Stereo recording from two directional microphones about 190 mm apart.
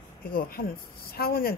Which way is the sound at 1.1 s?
50° left (ahead or behind).